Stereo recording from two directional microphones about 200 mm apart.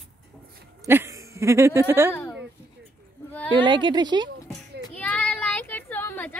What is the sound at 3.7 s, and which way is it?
Speech, 25° right (ahead or behind).